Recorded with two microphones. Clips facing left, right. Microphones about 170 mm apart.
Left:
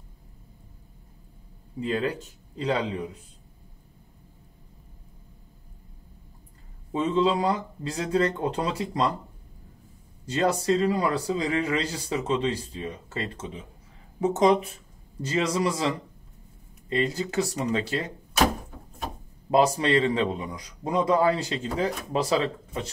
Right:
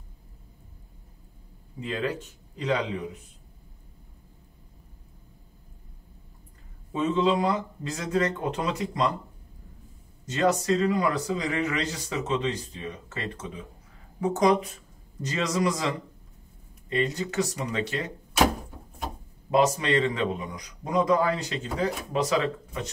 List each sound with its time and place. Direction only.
1.8 s a man's voice: 35° left (ahead or behind)
6.9 s a man's voice: 30° left (ahead or behind)
10.2 s a man's voice: 30° left (ahead or behind)
16.9 s a man's voice: 30° left (ahead or behind)
19.5 s a man's voice: 30° left (ahead or behind)